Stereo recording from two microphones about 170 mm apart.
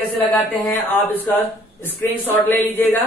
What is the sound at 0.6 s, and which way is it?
Speech, 10° left (ahead or behind).